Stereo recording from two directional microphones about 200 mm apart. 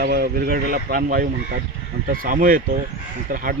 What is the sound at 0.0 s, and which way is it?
Speech, 50° right (ahead or behind).